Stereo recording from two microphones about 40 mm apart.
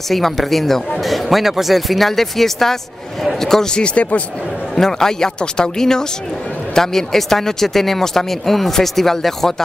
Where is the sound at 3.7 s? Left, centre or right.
Left.